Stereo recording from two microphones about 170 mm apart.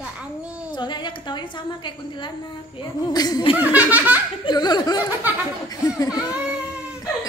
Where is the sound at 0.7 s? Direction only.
25° left (ahead or behind).